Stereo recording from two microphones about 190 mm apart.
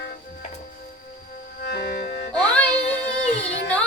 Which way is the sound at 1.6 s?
60° left (ahead or behind).